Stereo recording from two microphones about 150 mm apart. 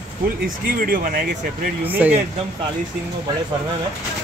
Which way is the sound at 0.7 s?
75° right (ahead or behind).